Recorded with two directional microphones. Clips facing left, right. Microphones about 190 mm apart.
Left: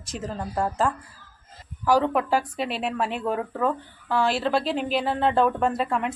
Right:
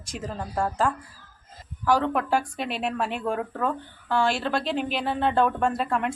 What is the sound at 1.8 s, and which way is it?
Speech, 5° left (ahead or behind).